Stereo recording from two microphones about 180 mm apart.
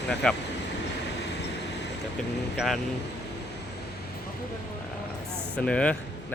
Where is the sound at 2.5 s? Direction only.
Centre (ahead or behind).